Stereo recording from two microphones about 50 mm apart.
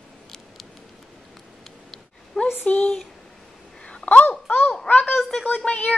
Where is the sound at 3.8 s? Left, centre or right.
Centre.